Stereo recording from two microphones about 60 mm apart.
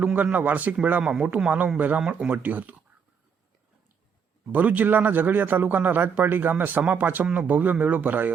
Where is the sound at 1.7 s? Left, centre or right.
Right.